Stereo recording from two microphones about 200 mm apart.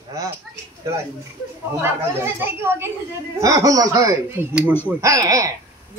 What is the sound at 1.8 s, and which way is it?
Speech, 10° right (ahead or behind).